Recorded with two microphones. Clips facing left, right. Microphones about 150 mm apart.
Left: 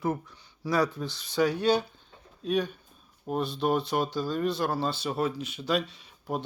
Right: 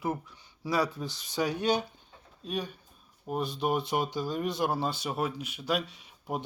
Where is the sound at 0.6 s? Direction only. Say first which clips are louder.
Left 3 dB; 10° right (ahead or behind).